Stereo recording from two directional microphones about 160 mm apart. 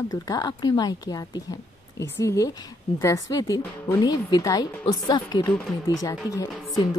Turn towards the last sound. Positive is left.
turn(degrees=20)  # may be behind; listen again after turning